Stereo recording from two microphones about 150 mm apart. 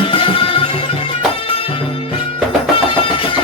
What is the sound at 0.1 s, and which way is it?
Music, 35° left (ahead or behind).